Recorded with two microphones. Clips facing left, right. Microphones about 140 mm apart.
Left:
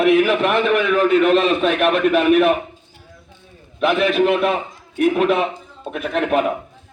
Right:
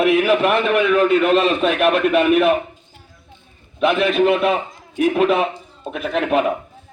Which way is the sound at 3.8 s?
Centre (ahead or behind).